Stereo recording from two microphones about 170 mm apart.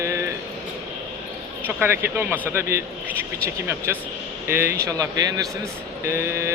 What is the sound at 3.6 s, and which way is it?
A man's voice, 15° right (ahead or behind).